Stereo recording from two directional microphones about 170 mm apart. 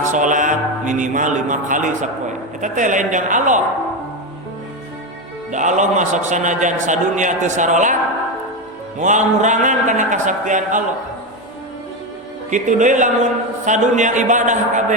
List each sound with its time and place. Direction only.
0.0 s a man's voice: 45° right (ahead or behind)
5.5 s a man's voice: 45° right (ahead or behind)
9.0 s a man's voice: 45° right (ahead or behind)
12.5 s a man's voice: 45° right (ahead or behind)